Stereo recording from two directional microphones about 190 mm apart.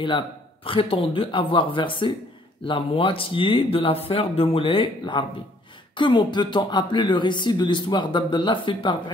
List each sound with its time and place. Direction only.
0.7 s speech: 30° left (ahead or behind)